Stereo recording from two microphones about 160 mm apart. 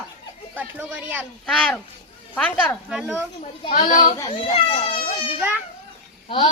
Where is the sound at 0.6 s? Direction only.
10° right (ahead or behind).